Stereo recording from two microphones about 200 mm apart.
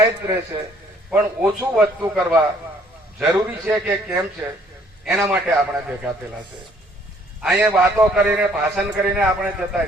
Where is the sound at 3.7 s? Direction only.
5° right (ahead or behind).